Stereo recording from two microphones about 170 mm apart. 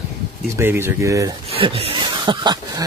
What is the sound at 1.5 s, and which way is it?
Speech, 35° right (ahead or behind).